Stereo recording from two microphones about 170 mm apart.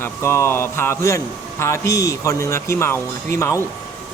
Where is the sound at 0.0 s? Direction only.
15° left (ahead or behind).